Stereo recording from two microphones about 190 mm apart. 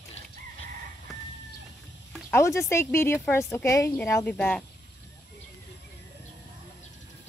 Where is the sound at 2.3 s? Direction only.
15° left (ahead or behind).